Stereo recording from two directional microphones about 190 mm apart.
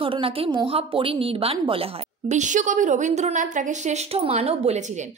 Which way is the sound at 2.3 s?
40° right (ahead or behind).